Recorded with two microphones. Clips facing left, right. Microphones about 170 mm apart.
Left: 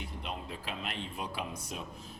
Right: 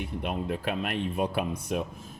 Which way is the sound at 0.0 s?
60° right (ahead or behind).